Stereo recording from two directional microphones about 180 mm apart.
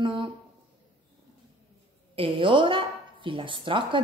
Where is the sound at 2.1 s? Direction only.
30° right (ahead or behind).